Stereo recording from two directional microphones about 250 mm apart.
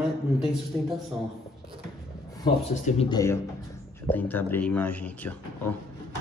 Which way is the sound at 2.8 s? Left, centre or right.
Left.